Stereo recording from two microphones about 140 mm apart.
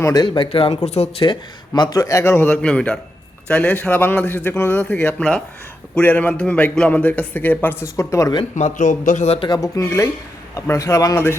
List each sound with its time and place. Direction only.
0.0 s speech: 30° left (ahead or behind); by 1.3 s 50° left (ahead or behind)
1.3 s a man's voice: 30° left (ahead or behind)
8.5 s a man's voice: 60° left (ahead or behind)
9.5 s a man's voice: 25° left (ahead or behind)